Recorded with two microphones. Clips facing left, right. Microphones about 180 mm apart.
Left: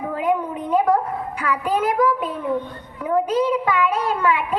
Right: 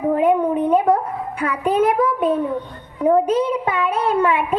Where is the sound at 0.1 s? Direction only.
25° right (ahead or behind).